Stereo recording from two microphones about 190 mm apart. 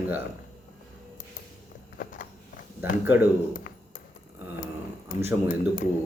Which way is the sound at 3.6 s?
45° left (ahead or behind).